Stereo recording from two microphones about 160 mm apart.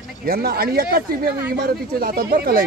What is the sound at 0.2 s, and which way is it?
Speech, 70° right (ahead or behind).